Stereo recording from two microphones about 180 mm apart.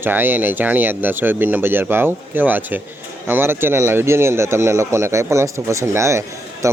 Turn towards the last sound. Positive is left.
turn(degrees=-15)  # may be behind; listen again after turning